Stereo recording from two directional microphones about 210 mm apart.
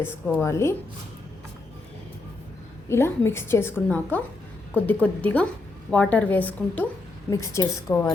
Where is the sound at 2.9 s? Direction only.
10° left (ahead or behind).